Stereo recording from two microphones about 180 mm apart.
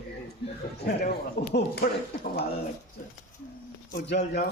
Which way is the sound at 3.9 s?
65° left (ahead or behind).